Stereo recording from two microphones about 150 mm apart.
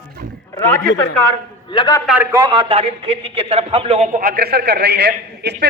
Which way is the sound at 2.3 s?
30° right (ahead or behind).